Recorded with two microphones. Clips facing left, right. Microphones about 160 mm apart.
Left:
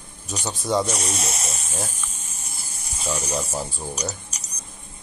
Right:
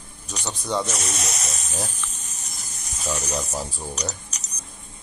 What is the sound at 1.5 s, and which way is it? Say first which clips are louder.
Speech: even; centre (ahead or behind).